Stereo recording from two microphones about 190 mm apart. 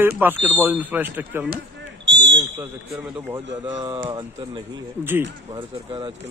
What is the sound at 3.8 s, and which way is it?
Speech, 25° right (ahead or behind).